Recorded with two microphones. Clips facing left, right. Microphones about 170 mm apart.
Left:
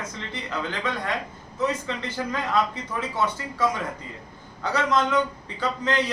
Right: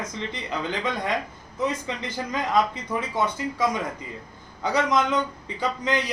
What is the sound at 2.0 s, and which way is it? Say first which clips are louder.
Speech: even; 15° right (ahead or behind).